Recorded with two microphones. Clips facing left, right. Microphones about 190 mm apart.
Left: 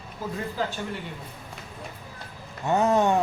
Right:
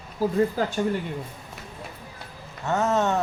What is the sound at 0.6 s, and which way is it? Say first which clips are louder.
Speech: right 3 dB; 45° right (ahead or behind).